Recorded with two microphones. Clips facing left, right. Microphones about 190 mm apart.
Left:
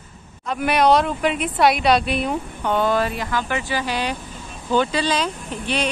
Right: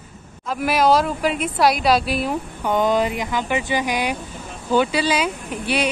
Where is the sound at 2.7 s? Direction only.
15° right (ahead or behind).